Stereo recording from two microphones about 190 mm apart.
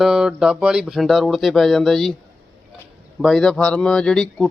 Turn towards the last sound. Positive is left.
turn(degrees=5)  # may be behind; listen again after turning